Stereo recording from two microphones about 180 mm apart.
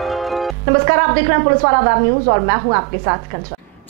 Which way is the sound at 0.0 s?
Centre (ahead or behind).